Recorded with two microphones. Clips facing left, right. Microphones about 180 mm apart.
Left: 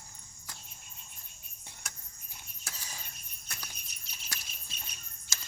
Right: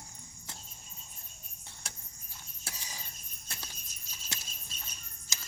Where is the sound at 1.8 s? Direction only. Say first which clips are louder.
Even; 30° right (ahead or behind).